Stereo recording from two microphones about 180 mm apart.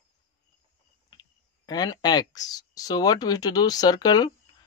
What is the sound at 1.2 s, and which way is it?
Speech, 20° left (ahead or behind).